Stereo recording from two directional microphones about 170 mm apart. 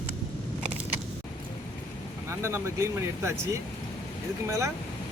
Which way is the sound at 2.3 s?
15° right (ahead or behind).